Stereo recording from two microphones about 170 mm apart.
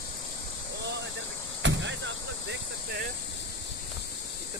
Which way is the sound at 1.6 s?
90° right.